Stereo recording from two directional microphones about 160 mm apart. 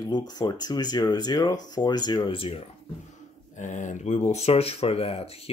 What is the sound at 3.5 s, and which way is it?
Speech, 50° left (ahead or behind).